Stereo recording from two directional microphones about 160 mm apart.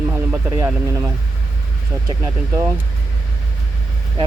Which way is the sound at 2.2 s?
15° right (ahead or behind).